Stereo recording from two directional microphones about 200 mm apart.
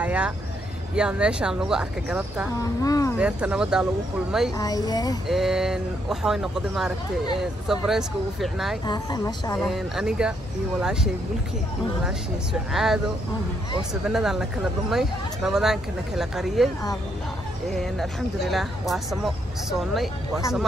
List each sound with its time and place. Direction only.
0.0 s speech: 5° right (ahead or behind)
2.6 s speech: 15° left (ahead or behind)
3.2 s speech: 5° right (ahead or behind)
4.6 s a woman's voice: 20° left (ahead or behind)
5.3 s speech: centre (ahead or behind)
8.8 s a woman's voice: 20° left (ahead or behind)
9.6 s speech: centre (ahead or behind)
12.7 s speech: centre (ahead or behind)
14.0 s speech: centre (ahead or behind)